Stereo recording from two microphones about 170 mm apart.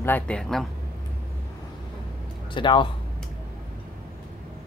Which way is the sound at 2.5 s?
30° left (ahead or behind).